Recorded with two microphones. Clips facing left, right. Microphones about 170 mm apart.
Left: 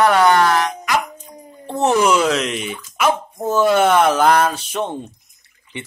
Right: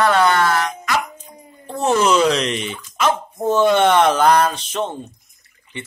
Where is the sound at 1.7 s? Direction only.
20° left (ahead or behind).